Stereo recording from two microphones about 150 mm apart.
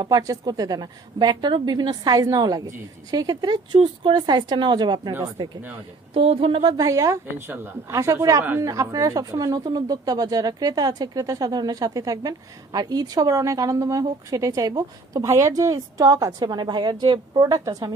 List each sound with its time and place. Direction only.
0.0 s a woman's voice: 25° right (ahead or behind)
6.1 s speech: 40° right (ahead or behind)
6.8 s a woman's voice: 25° right (ahead or behind)